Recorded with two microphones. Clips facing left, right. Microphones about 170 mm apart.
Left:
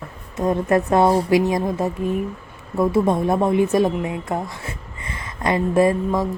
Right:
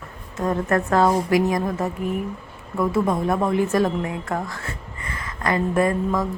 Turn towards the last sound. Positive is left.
turn(degrees=20)  # may be behind; listen again after turning